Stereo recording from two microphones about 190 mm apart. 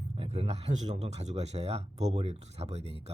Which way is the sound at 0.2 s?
30° right (ahead or behind).